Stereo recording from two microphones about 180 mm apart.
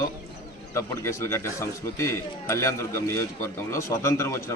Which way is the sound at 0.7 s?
15° left (ahead or behind).